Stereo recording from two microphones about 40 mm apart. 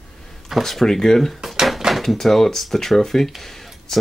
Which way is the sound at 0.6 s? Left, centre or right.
Centre.